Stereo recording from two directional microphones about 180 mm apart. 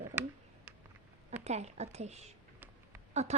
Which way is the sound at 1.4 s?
40° right (ahead or behind).